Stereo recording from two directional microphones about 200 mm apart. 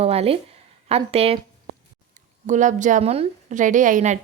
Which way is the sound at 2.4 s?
40° right (ahead or behind).